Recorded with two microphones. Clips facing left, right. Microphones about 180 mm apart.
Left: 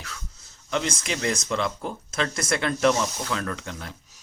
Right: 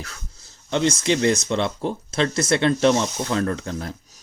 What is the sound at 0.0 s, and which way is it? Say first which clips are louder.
Speech: right 3 dB; 35° right (ahead or behind).